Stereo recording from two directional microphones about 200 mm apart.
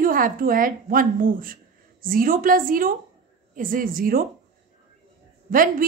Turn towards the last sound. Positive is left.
turn(degrees=-45)  # may be behind; listen again after turning